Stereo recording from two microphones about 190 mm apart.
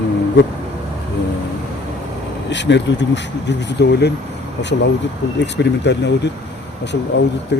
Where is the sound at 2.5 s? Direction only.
70° left (ahead or behind).